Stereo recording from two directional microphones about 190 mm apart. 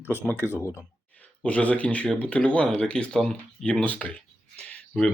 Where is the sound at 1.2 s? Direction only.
5° left (ahead or behind).